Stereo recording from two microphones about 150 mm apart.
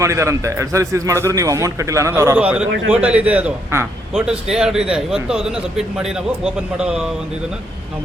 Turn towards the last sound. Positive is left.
turn(degrees=-5)  # may be behind; listen again after turning